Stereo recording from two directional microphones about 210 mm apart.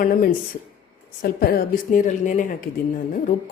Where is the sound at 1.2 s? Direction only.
45° left (ahead or behind).